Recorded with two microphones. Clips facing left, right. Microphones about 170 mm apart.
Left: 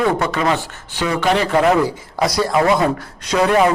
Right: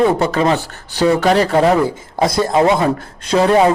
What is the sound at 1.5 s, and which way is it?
Speech, 30° right (ahead or behind).